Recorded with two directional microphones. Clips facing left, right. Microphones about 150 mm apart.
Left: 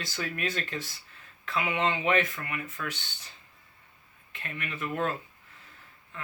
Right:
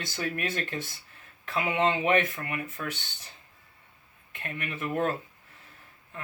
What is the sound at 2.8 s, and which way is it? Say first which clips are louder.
Speech: even; 20° right (ahead or behind).